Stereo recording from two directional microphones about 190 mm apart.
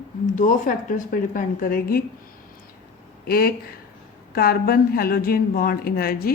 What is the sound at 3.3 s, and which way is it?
A woman's voice, 50° left (ahead or behind).